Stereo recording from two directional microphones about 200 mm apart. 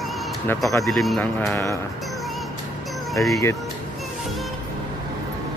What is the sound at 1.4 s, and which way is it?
Speech, 15° left (ahead or behind).